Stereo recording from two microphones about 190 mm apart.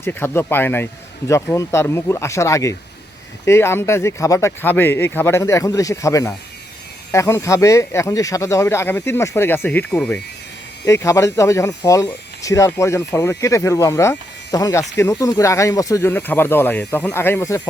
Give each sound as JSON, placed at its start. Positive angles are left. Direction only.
{"t": 0.0, "sound": "speech", "side_deg": 10}